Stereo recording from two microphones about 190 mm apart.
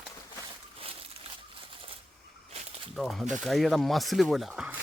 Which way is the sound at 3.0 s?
Centre (ahead or behind).